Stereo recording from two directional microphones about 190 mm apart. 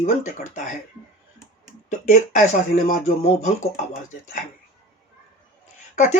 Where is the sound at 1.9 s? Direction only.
40° left (ahead or behind).